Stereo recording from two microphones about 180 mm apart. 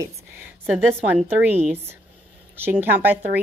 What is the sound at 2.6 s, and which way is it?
Speech, 10° right (ahead or behind).